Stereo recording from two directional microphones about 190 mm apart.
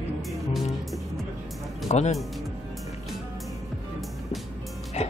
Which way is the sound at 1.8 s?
35° left (ahead or behind).